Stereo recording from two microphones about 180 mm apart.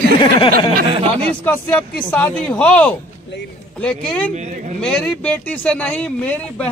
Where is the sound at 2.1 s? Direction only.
10° left (ahead or behind).